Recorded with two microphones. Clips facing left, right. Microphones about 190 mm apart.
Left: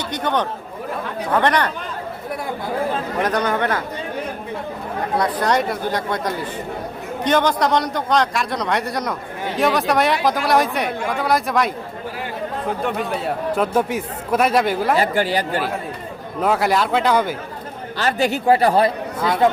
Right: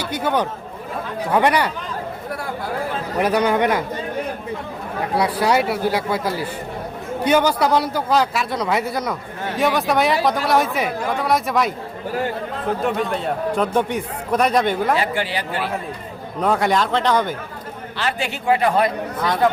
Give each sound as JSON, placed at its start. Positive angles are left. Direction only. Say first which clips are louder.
{"t": 0.0, "sound": "a man's voice", "louder": "right 1 dB", "side_deg": -5}
{"t": 3.2, "sound": "speech", "louder": "right 4 dB", "side_deg": -10}
{"t": 5.1, "sound": "a man's voice", "louder": "right 1 dB", "side_deg": -10}
{"t": 12.8, "sound": "a man's voice", "louder": "right 2 dB", "side_deg": 0}
{"t": 14.9, "sound": "speech", "louder": "left 4 dB", "side_deg": 40}
{"t": 16.4, "sound": "a man's voice", "louder": "even", "side_deg": 5}
{"t": 17.9, "sound": "speech", "louder": "left 5 dB", "side_deg": 40}